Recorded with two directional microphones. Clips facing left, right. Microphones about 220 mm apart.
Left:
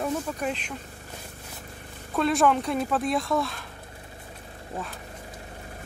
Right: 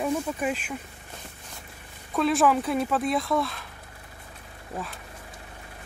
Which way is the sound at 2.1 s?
Centre (ahead or behind).